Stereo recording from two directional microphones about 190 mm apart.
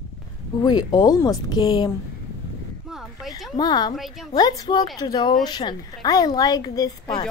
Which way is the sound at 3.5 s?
20° left (ahead or behind).